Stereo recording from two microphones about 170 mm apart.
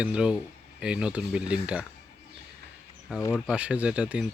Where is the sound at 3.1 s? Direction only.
5° right (ahead or behind).